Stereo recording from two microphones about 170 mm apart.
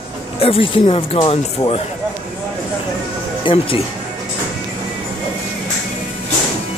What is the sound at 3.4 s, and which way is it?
Speech, 30° left (ahead or behind).